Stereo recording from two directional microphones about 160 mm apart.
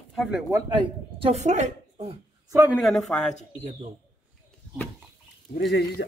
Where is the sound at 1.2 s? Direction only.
45° right (ahead or behind).